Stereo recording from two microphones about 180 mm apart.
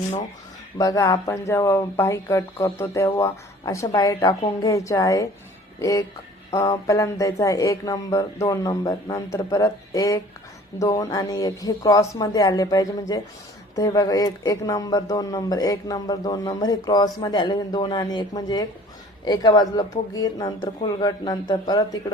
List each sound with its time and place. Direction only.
0.8 s speech: 20° left (ahead or behind)